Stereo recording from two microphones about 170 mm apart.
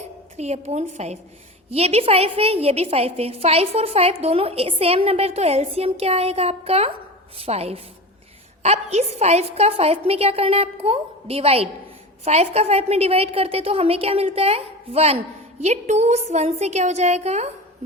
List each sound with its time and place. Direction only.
0.3 s a woman's voice: 40° right (ahead or behind)